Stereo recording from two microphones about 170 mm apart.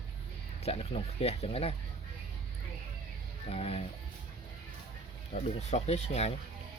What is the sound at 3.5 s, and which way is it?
Speech, 35° left (ahead or behind).